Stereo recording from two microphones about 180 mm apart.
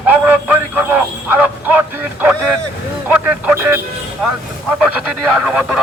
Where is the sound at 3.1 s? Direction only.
10° right (ahead or behind).